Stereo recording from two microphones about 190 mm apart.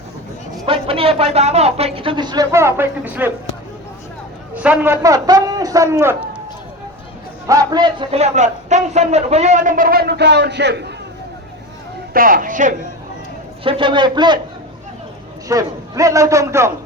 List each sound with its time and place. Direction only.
0.6 s speech: 30° right (ahead or behind); by 3.3 s 10° right (ahead or behind)
4.5 s a man's voice: 10° right (ahead or behind)
7.4 s a man's voice: 20° right (ahead or behind); by 10.9 s 65° right (ahead or behind)
12.1 s a man's voice: 45° right (ahead or behind)
13.7 s speech: 25° right (ahead or behind)
15.4 s a man's voice: 15° right (ahead or behind)